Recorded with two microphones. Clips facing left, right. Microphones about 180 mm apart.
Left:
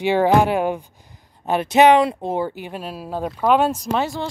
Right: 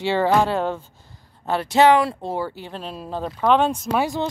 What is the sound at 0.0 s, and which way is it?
Speech, 15° left (ahead or behind).